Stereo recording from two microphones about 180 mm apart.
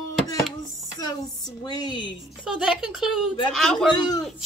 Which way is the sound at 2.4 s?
5° right (ahead or behind).